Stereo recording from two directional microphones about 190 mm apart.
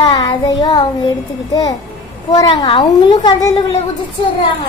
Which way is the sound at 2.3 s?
25° left (ahead or behind).